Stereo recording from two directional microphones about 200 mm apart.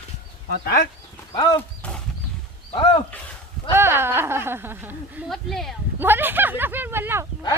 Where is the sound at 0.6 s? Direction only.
50° left (ahead or behind).